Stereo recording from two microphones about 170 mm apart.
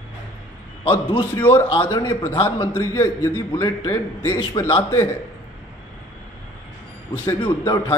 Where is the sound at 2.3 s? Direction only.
30° left (ahead or behind).